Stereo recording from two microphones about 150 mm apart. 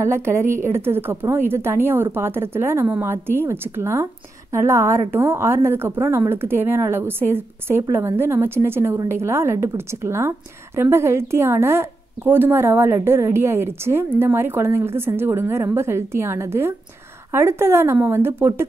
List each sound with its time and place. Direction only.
0.0 s a woman's voice: 20° right (ahead or behind)